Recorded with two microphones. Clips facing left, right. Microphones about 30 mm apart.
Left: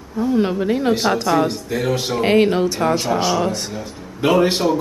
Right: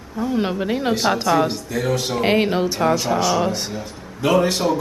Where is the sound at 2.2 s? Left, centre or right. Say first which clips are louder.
Left 4 dB; centre.